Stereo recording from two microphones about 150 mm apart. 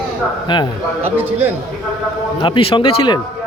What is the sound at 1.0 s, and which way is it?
Speech, 10° right (ahead or behind).